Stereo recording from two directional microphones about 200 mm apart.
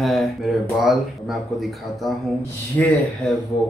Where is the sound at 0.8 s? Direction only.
Centre (ahead or behind).